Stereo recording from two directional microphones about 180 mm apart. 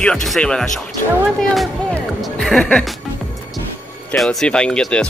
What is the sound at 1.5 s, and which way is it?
Music, centre (ahead or behind).